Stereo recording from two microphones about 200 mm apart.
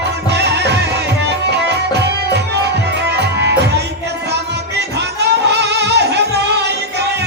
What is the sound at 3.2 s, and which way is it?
Music, 55° right (ahead or behind).